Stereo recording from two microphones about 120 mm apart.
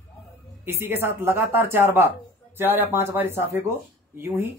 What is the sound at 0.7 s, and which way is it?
Speech, 20° right (ahead or behind).